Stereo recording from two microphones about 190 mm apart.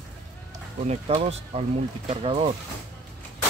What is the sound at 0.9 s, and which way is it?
Speech, 35° right (ahead or behind).